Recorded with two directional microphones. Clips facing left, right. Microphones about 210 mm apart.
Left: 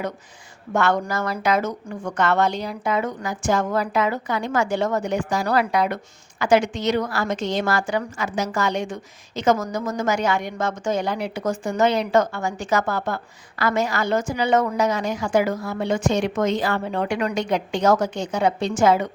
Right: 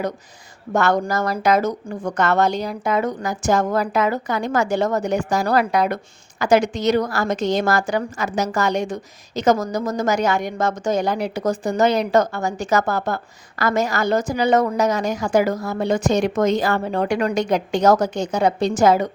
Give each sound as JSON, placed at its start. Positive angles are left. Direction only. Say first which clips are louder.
{"t": 0.7, "sound": "a woman's voice", "louder": "right 2 dB", "side_deg": -40}